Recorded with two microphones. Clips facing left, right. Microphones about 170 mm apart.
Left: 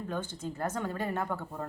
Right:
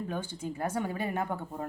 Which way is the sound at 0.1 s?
10° right (ahead or behind).